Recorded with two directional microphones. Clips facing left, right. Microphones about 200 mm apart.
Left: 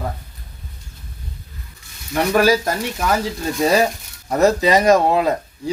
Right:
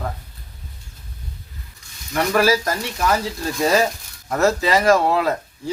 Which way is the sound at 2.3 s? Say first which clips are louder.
Left 2 dB; 15° left (ahead or behind).